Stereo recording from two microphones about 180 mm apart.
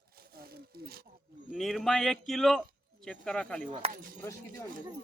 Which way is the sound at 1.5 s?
Centre (ahead or behind).